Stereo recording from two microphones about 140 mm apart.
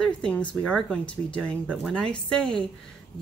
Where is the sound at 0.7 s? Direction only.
5° left (ahead or behind).